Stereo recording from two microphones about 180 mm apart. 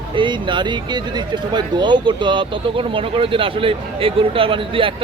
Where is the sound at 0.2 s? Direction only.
25° right (ahead or behind).